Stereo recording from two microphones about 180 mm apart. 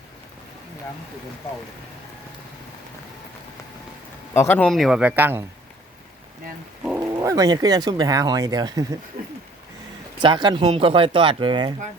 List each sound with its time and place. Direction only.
4.4 s speech: 10° left (ahead or behind); by 5.4 s 10° right (ahead or behind)
6.8 s a sound: 10° right (ahead or behind)
7.1 s speech: 20° right (ahead or behind)
10.2 s speech: 25° right (ahead or behind)